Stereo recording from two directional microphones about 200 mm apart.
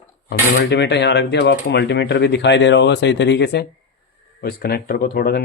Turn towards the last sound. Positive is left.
turn(degrees=50)  # may be behind; listen again after turning